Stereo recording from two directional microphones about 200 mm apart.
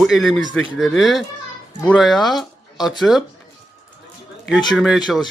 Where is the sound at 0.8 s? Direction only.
Centre (ahead or behind).